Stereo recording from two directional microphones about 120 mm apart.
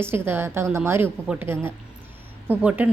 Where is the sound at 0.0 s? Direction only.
20° right (ahead or behind).